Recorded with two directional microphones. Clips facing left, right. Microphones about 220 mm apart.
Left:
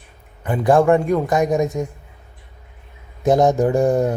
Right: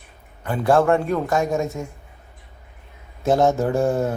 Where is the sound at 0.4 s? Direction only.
15° left (ahead or behind).